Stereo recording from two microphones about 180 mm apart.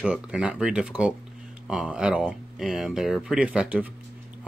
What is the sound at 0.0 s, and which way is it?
Speech, 5° right (ahead or behind).